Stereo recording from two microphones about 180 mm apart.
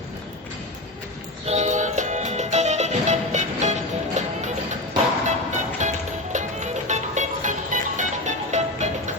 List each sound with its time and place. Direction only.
1.5 s music: 40° right (ahead or behind)